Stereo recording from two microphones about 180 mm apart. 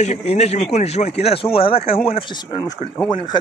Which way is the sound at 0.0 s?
35° left (ahead or behind).